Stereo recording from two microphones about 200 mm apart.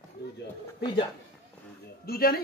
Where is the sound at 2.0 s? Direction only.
50° left (ahead or behind).